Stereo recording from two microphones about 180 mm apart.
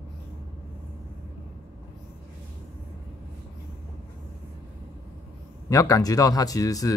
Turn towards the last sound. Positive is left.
turn(degrees=20)  # may be behind; listen again after turning